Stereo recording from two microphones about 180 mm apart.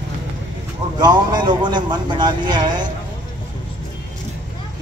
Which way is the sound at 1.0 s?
25° right (ahead or behind).